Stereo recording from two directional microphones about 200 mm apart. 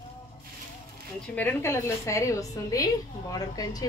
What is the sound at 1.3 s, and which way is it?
A woman's voice, 10° left (ahead or behind).